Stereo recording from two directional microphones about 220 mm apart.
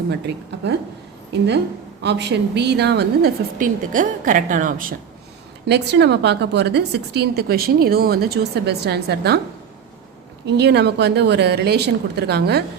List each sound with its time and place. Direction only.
2.0 s a woman's voice: 50° right (ahead or behind)
5.6 s a woman's voice: 50° right (ahead or behind)
10.4 s a woman's voice: 50° right (ahead or behind)